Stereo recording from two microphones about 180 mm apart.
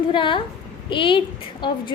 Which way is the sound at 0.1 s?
25° left (ahead or behind).